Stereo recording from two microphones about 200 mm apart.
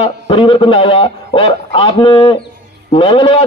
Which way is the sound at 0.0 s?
25° left (ahead or behind).